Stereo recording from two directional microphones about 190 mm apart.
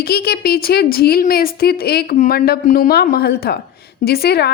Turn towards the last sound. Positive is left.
turn(degrees=55)  # may be behind; listen again after turning